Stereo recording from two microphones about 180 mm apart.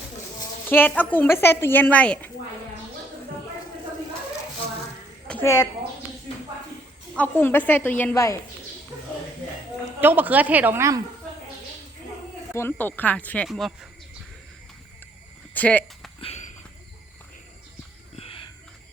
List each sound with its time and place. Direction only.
0.7 s a woman's voice: 10° left (ahead or behind)
5.3 s a woman's voice: 15° left (ahead or behind)
7.2 s a woman's voice: 10° left (ahead or behind)
10.0 s a woman's voice: 10° right (ahead or behind)
12.5 s a woman's voice: 10° left (ahead or behind)
15.5 s a sound: 10° left (ahead or behind)
16.2 s walk: 40° left (ahead or behind)
18.2 s a sound: 30° left (ahead or behind)